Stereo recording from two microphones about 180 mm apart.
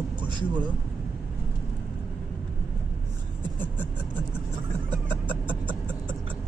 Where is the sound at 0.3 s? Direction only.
25° right (ahead or behind).